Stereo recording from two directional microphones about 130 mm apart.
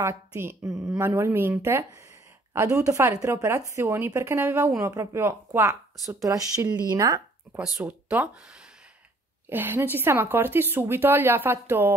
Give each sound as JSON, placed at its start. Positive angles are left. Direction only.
{"t": 0.0, "sound": "speech", "side_deg": -20}
{"t": 7.5, "sound": "speech", "side_deg": -10}
{"t": 9.5, "sound": "speech", "side_deg": -15}